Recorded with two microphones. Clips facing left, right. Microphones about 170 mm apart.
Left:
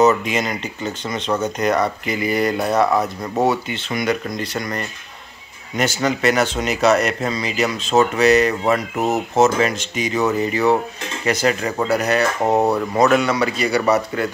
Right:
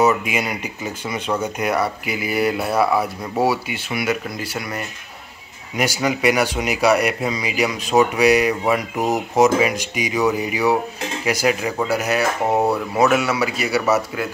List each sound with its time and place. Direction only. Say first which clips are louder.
0.0 s speech: left 2 dB; 10° right (ahead or behind)